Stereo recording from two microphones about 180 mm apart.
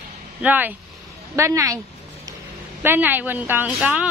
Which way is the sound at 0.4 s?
10° right (ahead or behind).